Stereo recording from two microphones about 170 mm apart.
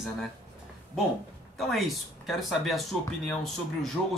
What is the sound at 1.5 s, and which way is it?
Speech, centre (ahead or behind).